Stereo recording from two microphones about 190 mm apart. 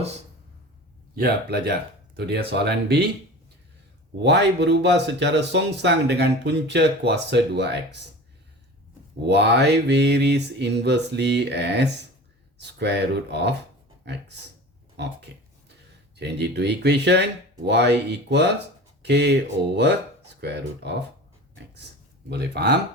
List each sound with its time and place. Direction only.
1.1 s speech: 55° right (ahead or behind)
4.2 s speech: 65° right (ahead or behind)
9.2 s speech: 60° right (ahead or behind)
22.3 s speech: 60° right (ahead or behind)